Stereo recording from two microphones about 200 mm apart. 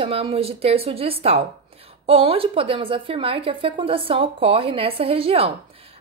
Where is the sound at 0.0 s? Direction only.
30° right (ahead or behind).